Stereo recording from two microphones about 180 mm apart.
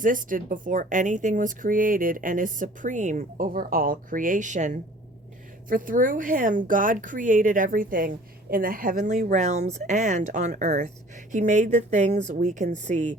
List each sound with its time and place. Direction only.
0.0 s speech: 50° right (ahead or behind)